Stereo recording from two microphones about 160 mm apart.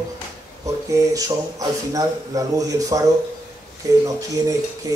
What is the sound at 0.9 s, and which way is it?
Speech, 20° right (ahead or behind).